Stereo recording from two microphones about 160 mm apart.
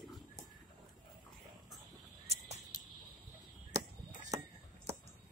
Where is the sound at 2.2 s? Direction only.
45° right (ahead or behind).